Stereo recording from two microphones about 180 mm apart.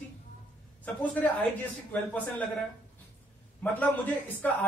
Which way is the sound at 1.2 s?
10° left (ahead or behind).